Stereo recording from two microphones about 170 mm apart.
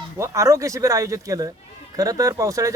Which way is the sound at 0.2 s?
15° right (ahead or behind).